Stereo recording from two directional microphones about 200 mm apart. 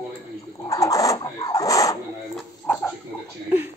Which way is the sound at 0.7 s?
15° left (ahead or behind).